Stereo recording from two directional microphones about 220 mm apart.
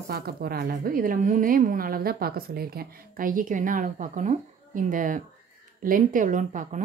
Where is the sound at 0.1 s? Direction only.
45° right (ahead or behind).